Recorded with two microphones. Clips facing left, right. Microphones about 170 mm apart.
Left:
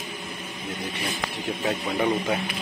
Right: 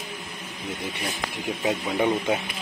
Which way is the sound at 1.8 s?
10° right (ahead or behind).